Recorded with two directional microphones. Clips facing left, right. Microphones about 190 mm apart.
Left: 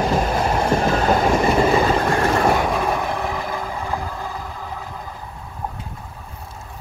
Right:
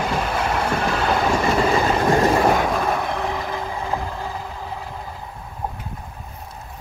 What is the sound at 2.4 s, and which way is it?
Train, centre (ahead or behind).